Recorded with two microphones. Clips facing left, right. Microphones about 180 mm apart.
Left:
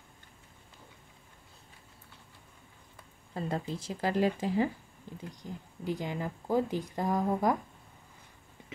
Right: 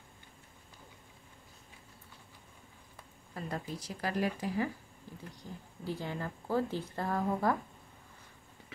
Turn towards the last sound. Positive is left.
turn(degrees=15)  # may be behind; listen again after turning